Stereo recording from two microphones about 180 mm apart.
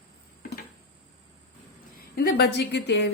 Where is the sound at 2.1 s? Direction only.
60° left (ahead or behind).